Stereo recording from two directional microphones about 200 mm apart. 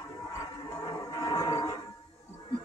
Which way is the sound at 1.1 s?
25° left (ahead or behind).